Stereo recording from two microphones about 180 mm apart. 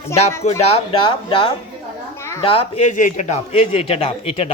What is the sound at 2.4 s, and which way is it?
Speech, 30° left (ahead or behind).